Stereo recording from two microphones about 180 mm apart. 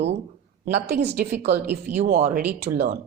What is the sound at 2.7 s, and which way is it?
Speech, 50° right (ahead or behind).